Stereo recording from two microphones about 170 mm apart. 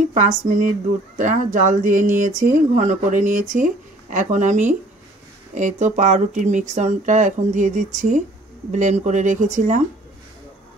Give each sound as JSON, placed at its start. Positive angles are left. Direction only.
{"t": 0.1, "sound": "speech", "side_deg": -50}